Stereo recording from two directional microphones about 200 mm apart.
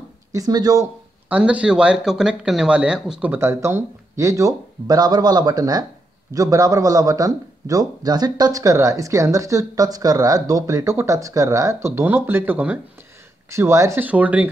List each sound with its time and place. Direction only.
0.3 s a man's voice: 20° right (ahead or behind)
1.3 s a man's voice: 5° right (ahead or behind)